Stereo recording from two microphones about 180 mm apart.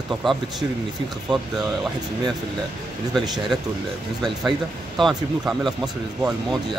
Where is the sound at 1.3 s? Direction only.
25° right (ahead or behind).